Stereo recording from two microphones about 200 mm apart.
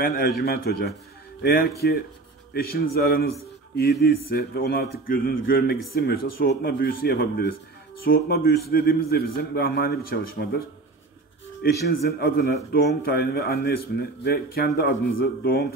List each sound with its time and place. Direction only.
0.0 s a man's voice: 50° left (ahead or behind)
11.8 s a man's voice: 50° left (ahead or behind)